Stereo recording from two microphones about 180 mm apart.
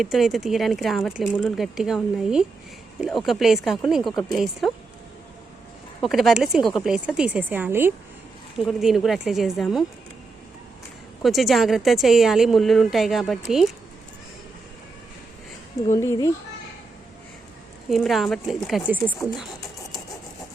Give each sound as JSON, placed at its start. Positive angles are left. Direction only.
{"t": 0.0, "sound": "a woman's voice", "side_deg": 0}
{"t": 6.0, "sound": "a woman's voice", "side_deg": 0}
{"t": 8.5, "sound": "a woman's voice", "side_deg": 0}
{"t": 11.2, "sound": "a woman's voice", "side_deg": 0}
{"t": 15.9, "sound": "a child's voice", "side_deg": 15}
{"t": 17.8, "sound": "a woman's voice", "side_deg": 0}